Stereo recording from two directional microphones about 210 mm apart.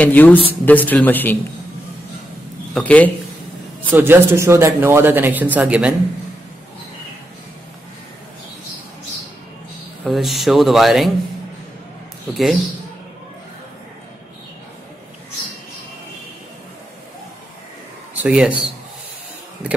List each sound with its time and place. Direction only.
0.0 s speech: 10° left (ahead or behind)
2.7 s speech: 5° left (ahead or behind)
3.9 s speech: 10° right (ahead or behind)
10.0 s speech: centre (ahead or behind)
18.1 s speech: 5° right (ahead or behind)